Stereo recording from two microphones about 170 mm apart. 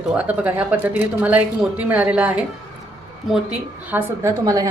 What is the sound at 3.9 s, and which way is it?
Speech, 15° right (ahead or behind).